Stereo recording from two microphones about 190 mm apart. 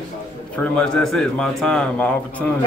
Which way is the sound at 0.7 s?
5° left (ahead or behind).